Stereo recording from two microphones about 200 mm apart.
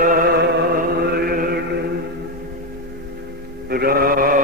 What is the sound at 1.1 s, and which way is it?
Mantra, 50° right (ahead or behind).